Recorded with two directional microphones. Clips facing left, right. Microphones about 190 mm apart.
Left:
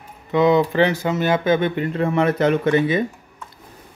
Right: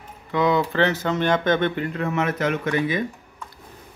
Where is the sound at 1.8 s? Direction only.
25° left (ahead or behind).